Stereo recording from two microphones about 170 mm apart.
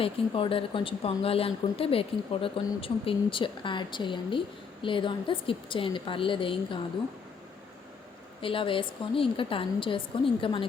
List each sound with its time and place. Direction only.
0.0 s speech: 30° left (ahead or behind)
8.4 s speech: 30° left (ahead or behind)